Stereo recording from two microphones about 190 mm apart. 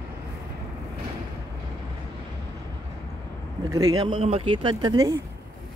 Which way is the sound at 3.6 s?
20° right (ahead or behind).